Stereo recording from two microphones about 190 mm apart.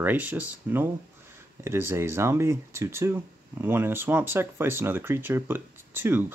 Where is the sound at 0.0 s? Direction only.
10° right (ahead or behind).